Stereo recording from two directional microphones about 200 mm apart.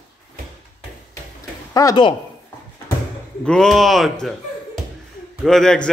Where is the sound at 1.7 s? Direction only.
20° left (ahead or behind).